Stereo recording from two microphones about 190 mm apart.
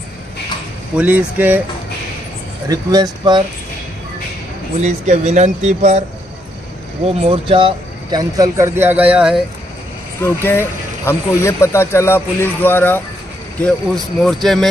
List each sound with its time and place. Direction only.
0.9 s speech: 10° right (ahead or behind)
2.7 s speech: 20° right (ahead or behind)
4.7 s speech: 35° right (ahead or behind)
7.2 s speech: 30° right (ahead or behind); by 9.4 s 5° right (ahead or behind)
10.2 s speech: 10° left (ahead or behind)
14.2 s speech: centre (ahead or behind)